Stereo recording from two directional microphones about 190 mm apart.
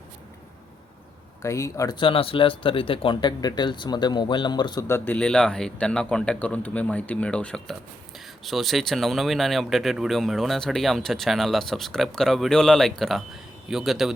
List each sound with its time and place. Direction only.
1.4 s speech: 15° left (ahead or behind); by 14.1 s centre (ahead or behind)